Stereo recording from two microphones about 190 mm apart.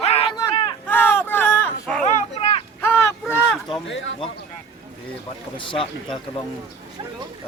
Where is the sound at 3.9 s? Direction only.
80° left.